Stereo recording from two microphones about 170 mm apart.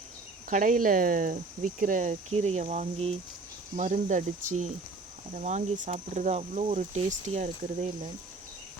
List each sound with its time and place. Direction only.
0.5 s speech: 50° right (ahead or behind)